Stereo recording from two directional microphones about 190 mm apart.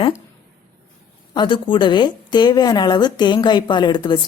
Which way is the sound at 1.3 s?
25° left (ahead or behind).